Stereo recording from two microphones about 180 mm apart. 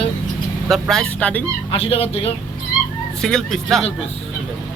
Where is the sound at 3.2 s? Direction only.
Centre (ahead or behind).